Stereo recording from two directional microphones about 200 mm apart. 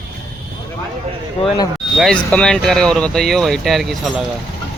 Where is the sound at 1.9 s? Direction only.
Centre (ahead or behind).